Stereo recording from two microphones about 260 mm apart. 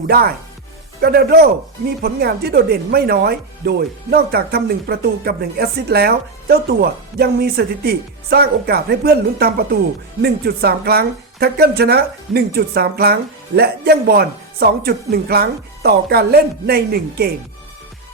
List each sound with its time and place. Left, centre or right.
0.1 s speech: right